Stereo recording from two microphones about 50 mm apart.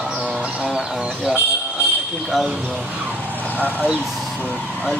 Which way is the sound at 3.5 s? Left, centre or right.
Left.